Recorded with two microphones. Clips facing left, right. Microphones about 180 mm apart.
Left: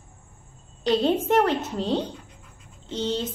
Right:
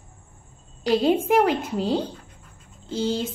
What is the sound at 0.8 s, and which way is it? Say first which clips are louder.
A woman's voice: right 2 dB; 10° right (ahead or behind).